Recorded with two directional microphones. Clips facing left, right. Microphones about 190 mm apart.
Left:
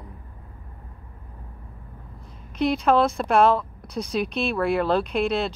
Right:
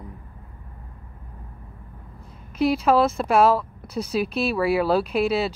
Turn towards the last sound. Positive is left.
turn(degrees=-5)  # may be behind; listen again after turning